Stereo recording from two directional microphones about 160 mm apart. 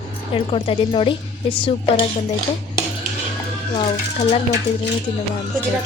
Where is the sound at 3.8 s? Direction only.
35° left (ahead or behind).